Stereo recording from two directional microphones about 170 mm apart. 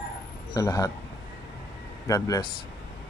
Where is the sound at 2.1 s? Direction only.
20° left (ahead or behind).